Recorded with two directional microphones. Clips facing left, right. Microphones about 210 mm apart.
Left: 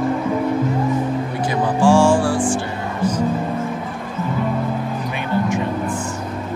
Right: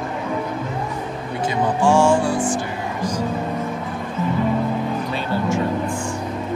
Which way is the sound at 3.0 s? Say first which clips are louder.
Left 5 dB; 10° right (ahead or behind).